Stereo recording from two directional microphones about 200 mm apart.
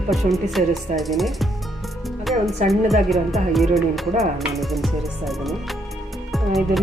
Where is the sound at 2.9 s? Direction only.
Centre (ahead or behind).